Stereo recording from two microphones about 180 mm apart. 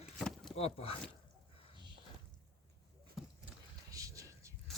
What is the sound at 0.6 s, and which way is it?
Speech, 35° left (ahead or behind).